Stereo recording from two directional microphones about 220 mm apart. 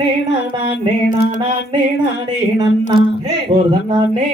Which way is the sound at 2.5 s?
15° right (ahead or behind).